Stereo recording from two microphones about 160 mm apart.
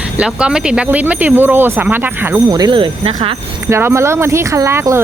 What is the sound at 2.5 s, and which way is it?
Speech, 25° right (ahead or behind).